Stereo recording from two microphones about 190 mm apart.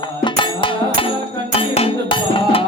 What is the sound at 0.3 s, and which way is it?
Music, 25° left (ahead or behind).